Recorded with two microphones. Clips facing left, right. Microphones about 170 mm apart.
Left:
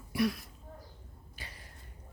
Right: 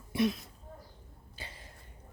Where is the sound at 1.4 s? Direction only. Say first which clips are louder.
Right 3 dB; 30° right (ahead or behind).